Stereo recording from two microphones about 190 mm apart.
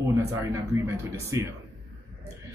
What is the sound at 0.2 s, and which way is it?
Speech, 15° right (ahead or behind).